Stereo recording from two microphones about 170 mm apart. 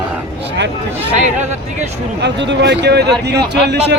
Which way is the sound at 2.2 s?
90° right.